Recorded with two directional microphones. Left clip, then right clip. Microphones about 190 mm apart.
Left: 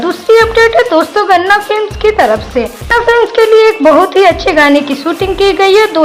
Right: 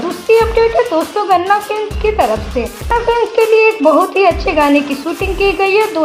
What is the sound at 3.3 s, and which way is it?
A woman's voice, 15° left (ahead or behind).